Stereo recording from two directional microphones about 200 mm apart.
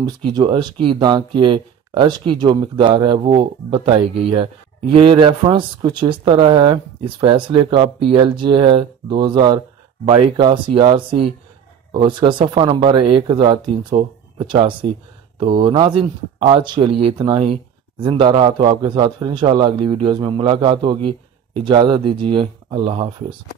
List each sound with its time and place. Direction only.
0.0 s speech: 25° right (ahead or behind)